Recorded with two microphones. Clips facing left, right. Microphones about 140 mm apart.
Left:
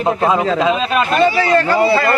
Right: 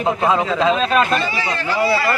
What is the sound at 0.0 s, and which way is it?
Speech, 20° left (ahead or behind).